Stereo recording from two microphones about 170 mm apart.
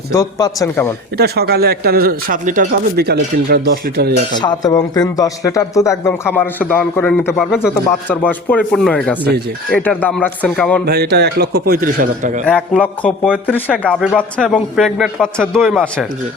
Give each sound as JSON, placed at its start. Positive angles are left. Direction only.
{"t": 0.1, "sound": "speech", "side_deg": 20}
{"t": 1.1, "sound": "speech", "side_deg": -70}
{"t": 4.4, "sound": "speech", "side_deg": 25}
{"t": 10.8, "sound": "speech", "side_deg": -70}
{"t": 12.5, "sound": "a man's voice", "side_deg": 10}